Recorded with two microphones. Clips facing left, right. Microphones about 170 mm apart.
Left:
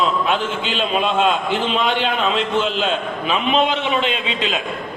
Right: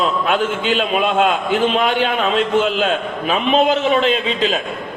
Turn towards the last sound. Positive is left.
turn(degrees=-40)  # may be behind; listen again after turning